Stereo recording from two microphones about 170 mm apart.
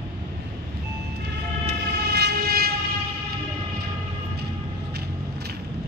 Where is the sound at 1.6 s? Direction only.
75° right (ahead or behind).